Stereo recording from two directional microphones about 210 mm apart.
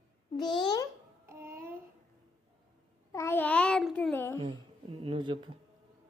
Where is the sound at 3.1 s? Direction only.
10° left (ahead or behind).